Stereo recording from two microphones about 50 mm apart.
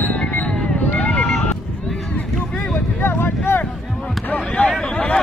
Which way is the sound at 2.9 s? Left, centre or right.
Left.